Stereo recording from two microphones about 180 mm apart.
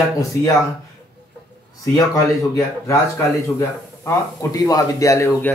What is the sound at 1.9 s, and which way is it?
Speech, 20° left (ahead or behind).